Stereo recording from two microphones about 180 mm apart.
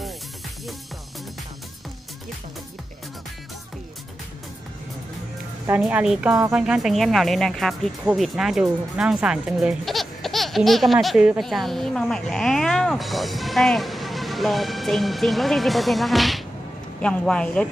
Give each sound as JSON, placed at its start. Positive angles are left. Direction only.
{"t": 5.8, "sound": "speech", "side_deg": -5}